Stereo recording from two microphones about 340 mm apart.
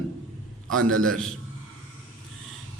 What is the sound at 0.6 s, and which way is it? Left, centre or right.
Speech, right.